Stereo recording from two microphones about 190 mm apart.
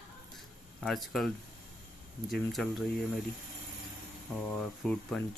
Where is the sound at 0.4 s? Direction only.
Centre (ahead or behind).